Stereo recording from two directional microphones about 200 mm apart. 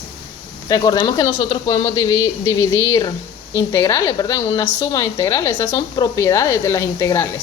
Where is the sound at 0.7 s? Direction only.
20° left (ahead or behind).